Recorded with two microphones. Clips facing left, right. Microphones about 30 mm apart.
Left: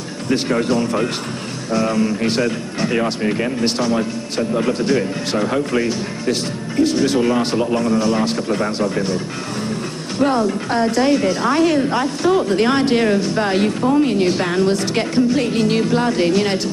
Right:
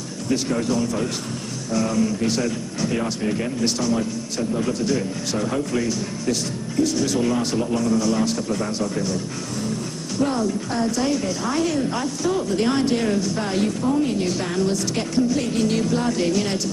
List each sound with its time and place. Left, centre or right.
0.3 s speech: left